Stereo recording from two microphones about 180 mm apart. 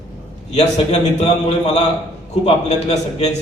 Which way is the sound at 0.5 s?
35° left (ahead or behind).